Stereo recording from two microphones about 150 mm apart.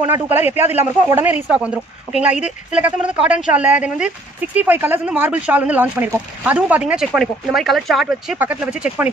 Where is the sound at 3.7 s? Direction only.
10° right (ahead or behind).